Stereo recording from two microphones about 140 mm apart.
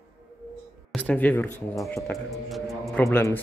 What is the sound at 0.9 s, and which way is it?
Speech, 10° left (ahead or behind).